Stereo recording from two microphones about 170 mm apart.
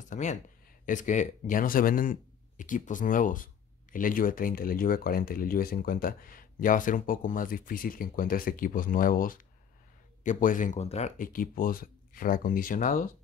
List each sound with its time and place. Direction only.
0.1 s speech: 45° left (ahead or behind)